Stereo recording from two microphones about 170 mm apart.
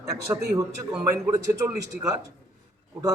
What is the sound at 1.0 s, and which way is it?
A man's voice, 15° right (ahead or behind).